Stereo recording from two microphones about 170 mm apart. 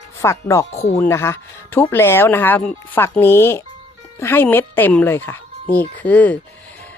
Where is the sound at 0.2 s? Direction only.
15° left (ahead or behind).